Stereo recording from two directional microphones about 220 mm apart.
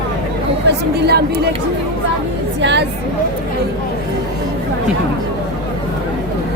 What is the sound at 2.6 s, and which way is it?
Speech, 55° right (ahead or behind).